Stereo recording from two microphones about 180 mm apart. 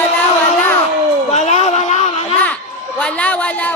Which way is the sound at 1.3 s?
40° left (ahead or behind).